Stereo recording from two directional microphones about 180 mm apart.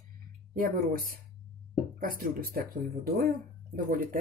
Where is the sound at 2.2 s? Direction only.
55° right (ahead or behind).